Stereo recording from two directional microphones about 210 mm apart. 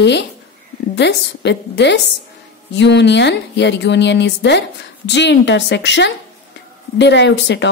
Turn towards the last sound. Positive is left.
turn(degrees=55)  # may be behind; listen again after turning